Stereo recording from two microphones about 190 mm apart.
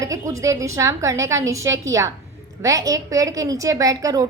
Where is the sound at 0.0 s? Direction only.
15° right (ahead or behind).